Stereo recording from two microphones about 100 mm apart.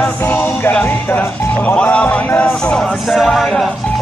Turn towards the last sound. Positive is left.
turn(degrees=0)  # may be behind; listen again after turning